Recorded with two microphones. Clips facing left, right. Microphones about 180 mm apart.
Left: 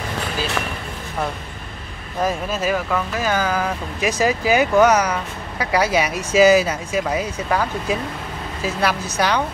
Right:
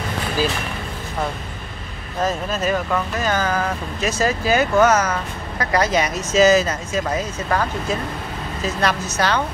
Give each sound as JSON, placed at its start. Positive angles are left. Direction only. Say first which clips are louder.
{"t": 2.2, "sound": "speech", "louder": "even", "side_deg": 10}
{"t": 9.1, "sound": "speech", "louder": "even", "side_deg": 15}